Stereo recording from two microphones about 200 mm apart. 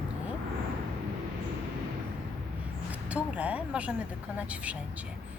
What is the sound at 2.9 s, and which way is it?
Speech, 5° right (ahead or behind).